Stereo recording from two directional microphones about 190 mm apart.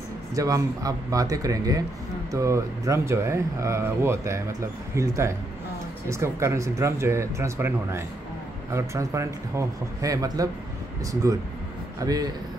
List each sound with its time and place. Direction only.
0.3 s speech: 15° right (ahead or behind)